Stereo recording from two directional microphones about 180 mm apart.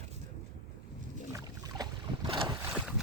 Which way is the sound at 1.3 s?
20° right (ahead or behind).